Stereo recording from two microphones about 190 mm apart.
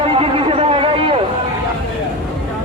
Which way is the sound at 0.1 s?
30° right (ahead or behind).